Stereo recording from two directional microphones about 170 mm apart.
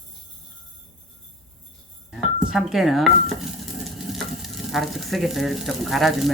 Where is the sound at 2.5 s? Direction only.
Centre (ahead or behind).